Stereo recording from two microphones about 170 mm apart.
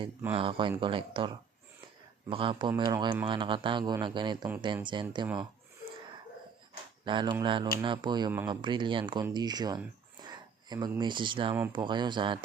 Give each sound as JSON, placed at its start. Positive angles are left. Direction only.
{"t": 0.3, "sound": "speech", "side_deg": -30}
{"t": 7.0, "sound": "speech", "side_deg": -30}